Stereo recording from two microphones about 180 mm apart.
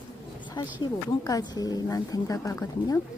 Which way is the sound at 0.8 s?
20° left (ahead or behind).